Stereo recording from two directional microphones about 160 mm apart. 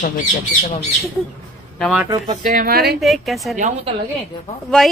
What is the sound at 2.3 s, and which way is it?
Speech, 60° right (ahead or behind).